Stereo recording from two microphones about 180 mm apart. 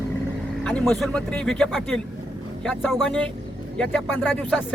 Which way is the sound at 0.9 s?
5° left (ahead or behind).